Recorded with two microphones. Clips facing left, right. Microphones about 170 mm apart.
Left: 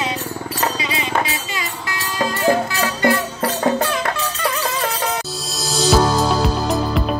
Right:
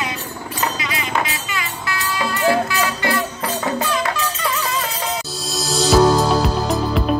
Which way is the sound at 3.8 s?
55° left (ahead or behind).